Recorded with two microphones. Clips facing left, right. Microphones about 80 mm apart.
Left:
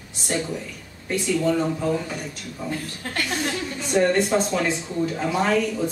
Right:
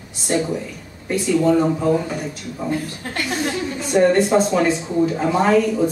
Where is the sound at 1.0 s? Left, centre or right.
Centre.